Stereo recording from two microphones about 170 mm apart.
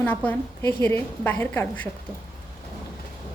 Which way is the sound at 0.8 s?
10° left (ahead or behind).